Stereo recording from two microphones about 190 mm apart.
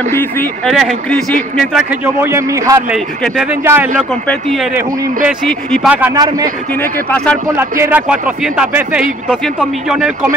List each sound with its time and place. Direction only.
0.1 s speech: 10° left (ahead or behind)
0.7 s a man's voice: centre (ahead or behind)
2.2 s speech: 15° right (ahead or behind)
2.9 s a man's voice: 5° right (ahead or behind)
4.3 s a man's voice: centre (ahead or behind)
4.7 s speech: 10° right (ahead or behind)
5.5 s a man's voice: 5° left (ahead or behind)
6.1 s a man's voice: 20° right (ahead or behind)
6.8 s speech: 10° left (ahead or behind)
7.4 s a man's voice: 15° right (ahead or behind)